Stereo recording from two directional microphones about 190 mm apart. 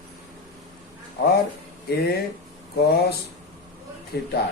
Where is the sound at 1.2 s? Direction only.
55° left (ahead or behind).